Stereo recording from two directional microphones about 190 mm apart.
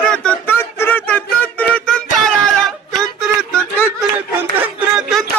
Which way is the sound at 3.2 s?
5° left (ahead or behind).